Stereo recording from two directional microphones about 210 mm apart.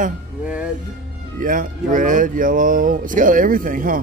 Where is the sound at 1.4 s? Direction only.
40° right (ahead or behind).